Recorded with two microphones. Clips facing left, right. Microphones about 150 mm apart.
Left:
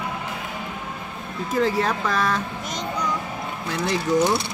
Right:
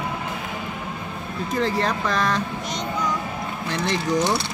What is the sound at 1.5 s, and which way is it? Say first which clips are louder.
Speech: left 2 dB; 5° left (ahead or behind).